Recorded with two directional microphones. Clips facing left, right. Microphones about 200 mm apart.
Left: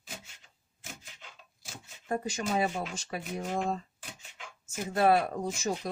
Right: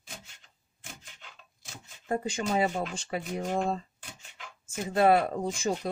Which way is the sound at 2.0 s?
30° right (ahead or behind).